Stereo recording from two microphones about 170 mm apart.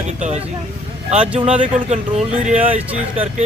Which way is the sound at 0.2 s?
40° right (ahead or behind).